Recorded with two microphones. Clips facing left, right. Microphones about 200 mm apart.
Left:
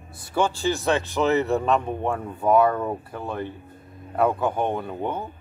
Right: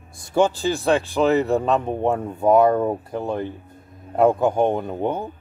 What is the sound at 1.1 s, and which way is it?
Speech, 15° right (ahead or behind).